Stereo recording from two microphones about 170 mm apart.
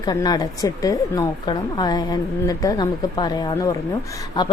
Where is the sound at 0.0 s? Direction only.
25° left (ahead or behind).